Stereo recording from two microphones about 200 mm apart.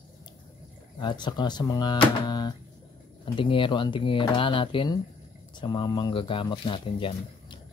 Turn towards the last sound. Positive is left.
turn(degrees=25)  # may be behind; listen again after turning